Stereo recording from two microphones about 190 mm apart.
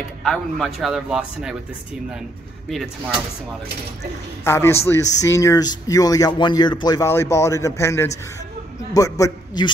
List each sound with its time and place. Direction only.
0.2 s speech: centre (ahead or behind)
4.5 s speech: 15° left (ahead or behind)